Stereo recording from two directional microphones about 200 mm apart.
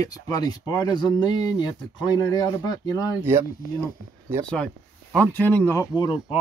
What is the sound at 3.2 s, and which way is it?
Speech, 10° right (ahead or behind).